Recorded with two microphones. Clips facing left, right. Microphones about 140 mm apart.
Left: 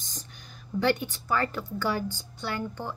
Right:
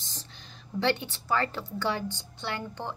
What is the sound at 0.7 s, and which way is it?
A woman's voice, 30° right (ahead or behind).